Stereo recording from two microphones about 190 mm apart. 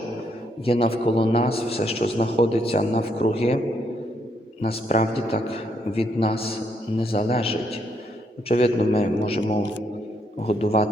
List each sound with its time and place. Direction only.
0.6 s a man's voice: 30° left (ahead or behind)
4.6 s a man's voice: 35° left (ahead or behind)